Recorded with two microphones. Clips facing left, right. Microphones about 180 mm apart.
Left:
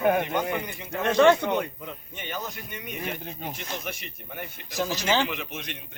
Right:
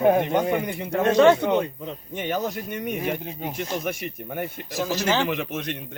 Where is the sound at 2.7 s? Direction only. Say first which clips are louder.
Right 5 dB; 55° right (ahead or behind).